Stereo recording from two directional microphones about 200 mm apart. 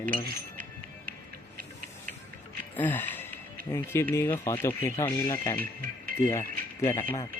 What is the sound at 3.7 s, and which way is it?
Speech, 10° left (ahead or behind).